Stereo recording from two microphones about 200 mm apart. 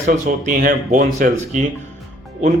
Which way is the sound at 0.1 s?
45° right (ahead or behind).